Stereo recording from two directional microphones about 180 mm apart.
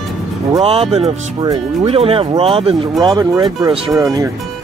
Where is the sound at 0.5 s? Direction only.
35° right (ahead or behind); by 4.3 s 15° right (ahead or behind).